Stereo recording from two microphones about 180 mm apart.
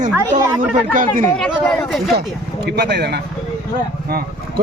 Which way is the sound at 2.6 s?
65° right (ahead or behind).